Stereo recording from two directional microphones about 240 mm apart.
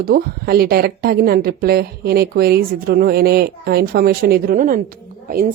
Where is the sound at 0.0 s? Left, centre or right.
Right.